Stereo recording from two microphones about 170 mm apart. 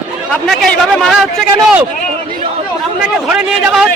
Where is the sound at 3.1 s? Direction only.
5° right (ahead or behind).